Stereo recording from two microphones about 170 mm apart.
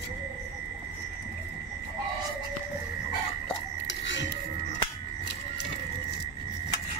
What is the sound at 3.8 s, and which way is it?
Music, 90° left.